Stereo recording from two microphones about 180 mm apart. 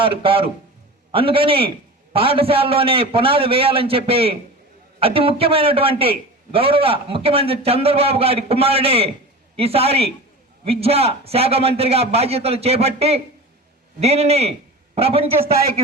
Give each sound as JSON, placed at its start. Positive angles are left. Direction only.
{"t": 0.0, "sound": "a man's voice", "side_deg": -30}